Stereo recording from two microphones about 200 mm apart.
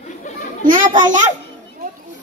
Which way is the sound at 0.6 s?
40° right (ahead or behind).